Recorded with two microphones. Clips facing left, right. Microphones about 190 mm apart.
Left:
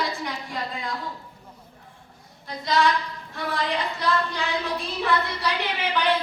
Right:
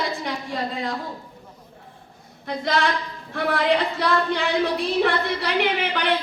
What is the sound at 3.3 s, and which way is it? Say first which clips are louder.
Speech: right 7 dB; 60° right (ahead or behind).